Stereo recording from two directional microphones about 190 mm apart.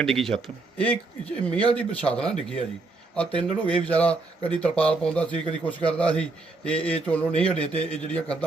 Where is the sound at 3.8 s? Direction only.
5° left (ahead or behind).